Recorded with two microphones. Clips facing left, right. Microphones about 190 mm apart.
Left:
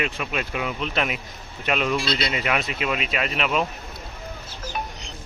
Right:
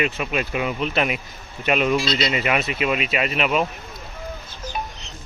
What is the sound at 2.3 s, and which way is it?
Speech, 5° right (ahead or behind).